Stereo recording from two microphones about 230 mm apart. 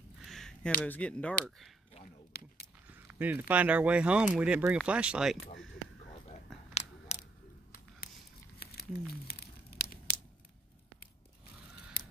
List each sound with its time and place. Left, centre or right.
0.2 s a sound: centre
0.8 s speech: centre
2.3 s speech: left
2.9 s speech: centre
6.2 s a sound: left
8.5 s tearing: left